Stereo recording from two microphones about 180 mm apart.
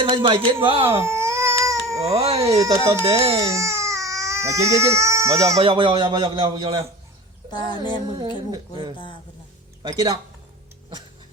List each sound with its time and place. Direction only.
0.0 s a man's voice: 30° right (ahead or behind)
0.9 s baby cry: 15° right (ahead or behind)
2.0 s speech: 35° right (ahead or behind)
2.6 s speech: 15° right (ahead or behind)
3.0 s speech: 30° right (ahead or behind)
3.3 s baby cry: 15° right (ahead or behind)
5.5 s a man's voice: 30° right (ahead or behind)
7.5 s a sound: 25° left (ahead or behind)
8.4 s a man's voice: 25° right (ahead or behind)